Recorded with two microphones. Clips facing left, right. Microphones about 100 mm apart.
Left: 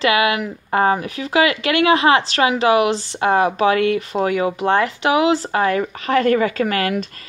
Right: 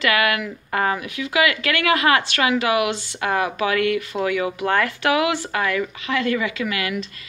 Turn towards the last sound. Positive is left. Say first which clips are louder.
# left 6 dB
turn(degrees=40)  # may be behind; listen again after turning